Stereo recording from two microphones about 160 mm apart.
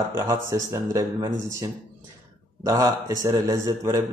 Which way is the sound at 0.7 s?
20° right (ahead or behind).